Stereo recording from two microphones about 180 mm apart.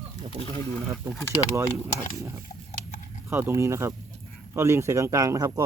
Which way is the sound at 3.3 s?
15° right (ahead or behind).